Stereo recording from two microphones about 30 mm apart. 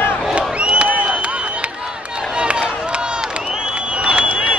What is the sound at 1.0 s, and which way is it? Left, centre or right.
Chop, right.